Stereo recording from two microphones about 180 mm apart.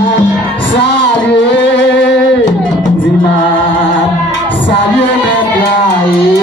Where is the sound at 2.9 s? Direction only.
90° left.